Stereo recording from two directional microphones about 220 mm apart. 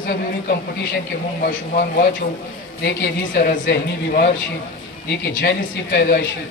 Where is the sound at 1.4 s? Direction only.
40° left (ahead or behind).